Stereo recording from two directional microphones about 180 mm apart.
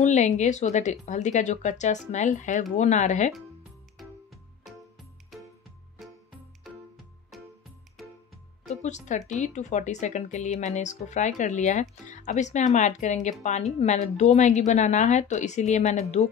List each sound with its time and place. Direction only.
0.0 s speech: 40° left (ahead or behind)
4.0 s music: centre (ahead or behind)
7.3 s music: centre (ahead or behind)
8.8 s speech: 40° left (ahead or behind)